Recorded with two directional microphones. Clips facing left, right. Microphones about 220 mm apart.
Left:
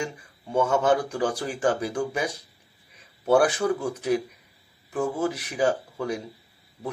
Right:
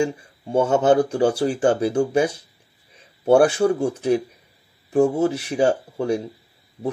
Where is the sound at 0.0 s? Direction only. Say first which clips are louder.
Right 10 dB; 30° right (ahead or behind).